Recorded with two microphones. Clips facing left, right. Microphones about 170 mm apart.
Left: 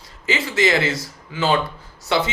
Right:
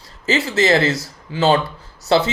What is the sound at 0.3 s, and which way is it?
Speech, 40° right (ahead or behind).